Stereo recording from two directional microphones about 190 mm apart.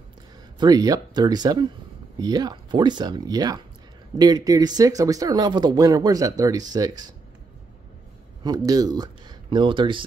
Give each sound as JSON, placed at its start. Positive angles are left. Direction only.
{"t": 0.6, "sound": "speech", "side_deg": -20}
{"t": 8.5, "sound": "speech", "side_deg": -20}